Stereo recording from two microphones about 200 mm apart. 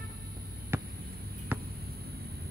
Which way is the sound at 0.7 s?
10° right (ahead or behind).